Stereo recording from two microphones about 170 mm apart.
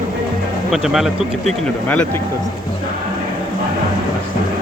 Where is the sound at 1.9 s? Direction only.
10° left (ahead or behind).